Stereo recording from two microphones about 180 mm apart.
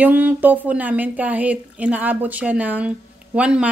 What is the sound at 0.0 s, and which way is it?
A woman's voice, 10° right (ahead or behind).